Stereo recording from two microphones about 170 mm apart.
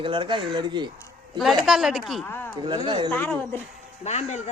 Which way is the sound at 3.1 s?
10° left (ahead or behind).